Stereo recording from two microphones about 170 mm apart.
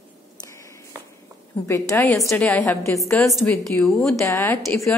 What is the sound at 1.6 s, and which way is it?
A woman's voice, 15° left (ahead or behind).